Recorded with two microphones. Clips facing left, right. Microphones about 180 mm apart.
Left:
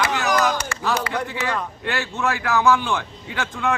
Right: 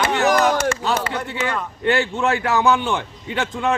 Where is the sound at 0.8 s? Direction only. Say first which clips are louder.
Right 1 dB; 25° right (ahead or behind).